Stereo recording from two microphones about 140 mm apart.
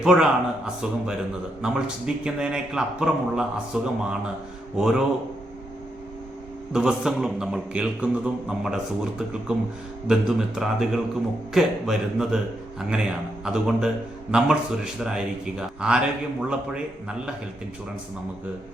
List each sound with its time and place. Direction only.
0.0 s a man's voice: 5° right (ahead or behind)
6.7 s a man's voice: 5° right (ahead or behind)